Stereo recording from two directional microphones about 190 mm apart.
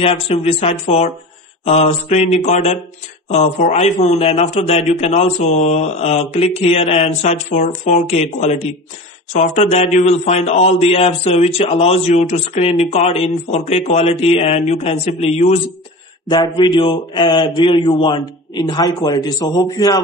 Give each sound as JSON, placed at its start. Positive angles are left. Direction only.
{"t": 0.0, "sound": "a man's voice", "side_deg": 30}
{"t": 16.3, "sound": "a man's voice", "side_deg": 25}